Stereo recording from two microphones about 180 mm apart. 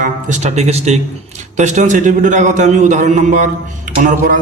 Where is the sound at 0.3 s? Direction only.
40° right (ahead or behind).